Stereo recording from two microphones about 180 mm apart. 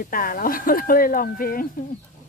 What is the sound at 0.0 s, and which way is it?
Speech, 50° left (ahead or behind).